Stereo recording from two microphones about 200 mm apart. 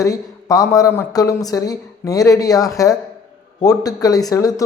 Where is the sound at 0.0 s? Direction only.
15° left (ahead or behind).